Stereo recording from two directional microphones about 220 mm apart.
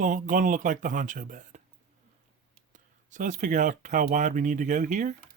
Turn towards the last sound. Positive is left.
turn(degrees=-35)  # may be behind; listen again after turning